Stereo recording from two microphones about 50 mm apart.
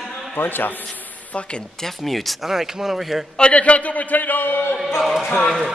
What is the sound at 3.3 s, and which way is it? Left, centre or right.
A man's voice, left.